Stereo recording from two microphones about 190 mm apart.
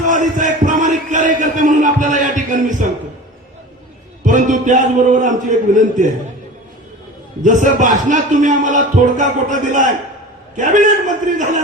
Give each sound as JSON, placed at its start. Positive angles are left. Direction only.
{"t": 0.1, "sound": "a sound", "side_deg": -40}
{"t": 4.2, "sound": "a man's voice", "side_deg": -40}
{"t": 7.4, "sound": "speech", "side_deg": -40}